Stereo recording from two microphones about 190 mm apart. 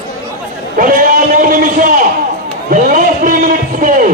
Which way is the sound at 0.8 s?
45° right (ahead or behind).